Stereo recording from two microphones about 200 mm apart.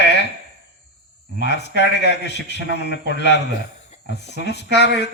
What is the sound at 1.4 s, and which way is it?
A man's voice, 60° left (ahead or behind).